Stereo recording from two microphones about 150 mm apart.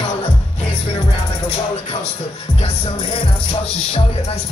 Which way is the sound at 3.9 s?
40° left (ahead or behind).